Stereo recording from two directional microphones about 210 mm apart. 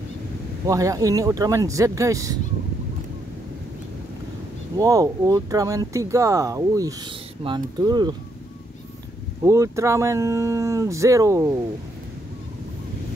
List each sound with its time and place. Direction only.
0.7 s speech: 15° right (ahead or behind)
4.7 s speech: 15° right (ahead or behind)
9.4 s speech: 15° right (ahead or behind)